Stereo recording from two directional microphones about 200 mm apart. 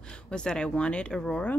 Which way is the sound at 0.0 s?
5° left (ahead or behind).